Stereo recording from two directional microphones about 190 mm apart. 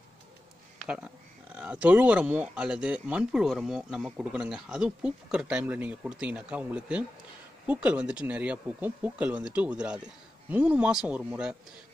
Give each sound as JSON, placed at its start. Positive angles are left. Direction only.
{"t": 0.8, "sound": "speech", "side_deg": -5}